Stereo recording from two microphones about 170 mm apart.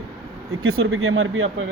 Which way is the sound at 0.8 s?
90° right.